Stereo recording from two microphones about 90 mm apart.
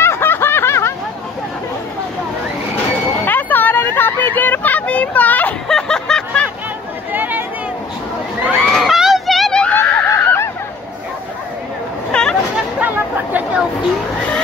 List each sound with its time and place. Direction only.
0.0 s snicker: 25° left (ahead or behind)
3.3 s vehicle: 20° left (ahead or behind)
5.7 s snicker: 5° left (ahead or behind)
7.1 s a sound: 20° right (ahead or behind)
8.6 s a sound: centre (ahead or behind)
9.8 s screaming: 15° left (ahead or behind)
10.0 s a sound: 25° left (ahead or behind)
12.1 s chatter: 10° left (ahead or behind)
12.8 s chatter: 20° right (ahead or behind)